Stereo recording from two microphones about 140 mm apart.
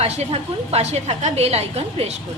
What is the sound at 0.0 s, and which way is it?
A woman's voice, 50° right (ahead or behind).